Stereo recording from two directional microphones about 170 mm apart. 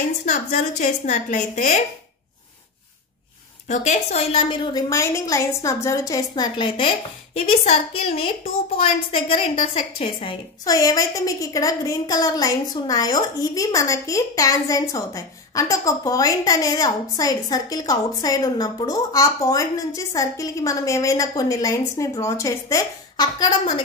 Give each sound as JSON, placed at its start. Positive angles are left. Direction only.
{"t": 0.2, "sound": "a woman's voice", "side_deg": 45}
{"t": 3.6, "sound": "a woman's voice", "side_deg": 40}
{"t": 4.8, "sound": "a woman's voice", "side_deg": 15}
{"t": 10.7, "sound": "a woman's voice", "side_deg": 20}